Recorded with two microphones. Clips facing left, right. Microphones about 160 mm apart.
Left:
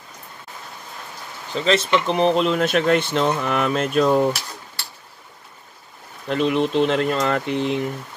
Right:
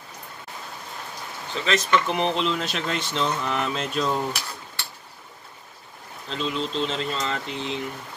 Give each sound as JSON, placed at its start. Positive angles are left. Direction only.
{"t": 1.5, "sound": "speech", "side_deg": 35}
{"t": 2.4, "sound": "speech", "side_deg": 55}
{"t": 6.2, "sound": "speech", "side_deg": 60}